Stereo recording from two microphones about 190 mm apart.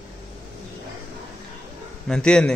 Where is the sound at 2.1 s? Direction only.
5° left (ahead or behind).